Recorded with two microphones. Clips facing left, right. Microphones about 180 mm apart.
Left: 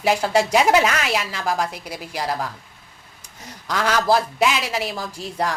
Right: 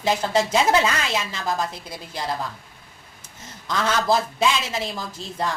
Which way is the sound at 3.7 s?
10° left (ahead or behind).